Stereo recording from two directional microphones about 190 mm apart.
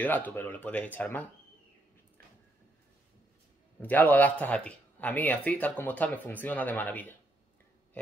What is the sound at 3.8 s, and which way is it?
Speech, 10° left (ahead or behind).